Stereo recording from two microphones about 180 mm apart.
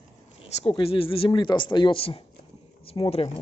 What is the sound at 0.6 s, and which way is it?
Speech, 30° left (ahead or behind).